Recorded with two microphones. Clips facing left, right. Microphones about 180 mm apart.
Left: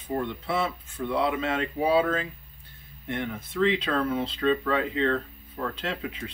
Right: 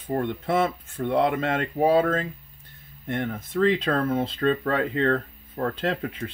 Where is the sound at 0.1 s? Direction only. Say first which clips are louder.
Right 4 dB; 50° right (ahead or behind).